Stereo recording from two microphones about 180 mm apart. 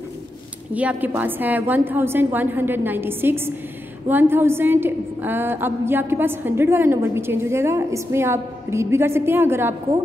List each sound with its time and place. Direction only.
0.7 s a woman's voice: 10° right (ahead or behind)